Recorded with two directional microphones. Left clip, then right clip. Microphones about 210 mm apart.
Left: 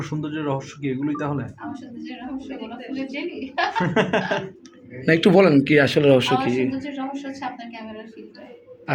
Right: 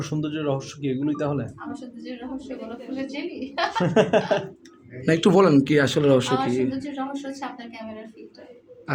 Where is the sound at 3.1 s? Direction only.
15° right (ahead or behind).